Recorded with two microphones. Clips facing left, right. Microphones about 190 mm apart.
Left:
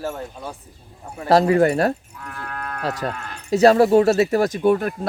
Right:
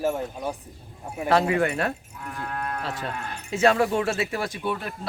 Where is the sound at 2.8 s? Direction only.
40° left (ahead or behind).